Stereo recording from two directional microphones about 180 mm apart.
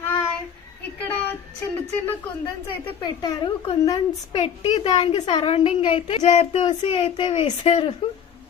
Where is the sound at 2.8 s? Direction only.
25° left (ahead or behind).